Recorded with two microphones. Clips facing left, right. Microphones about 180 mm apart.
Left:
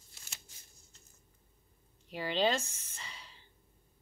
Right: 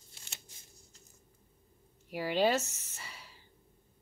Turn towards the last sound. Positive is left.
turn(degrees=-10)  # may be behind; listen again after turning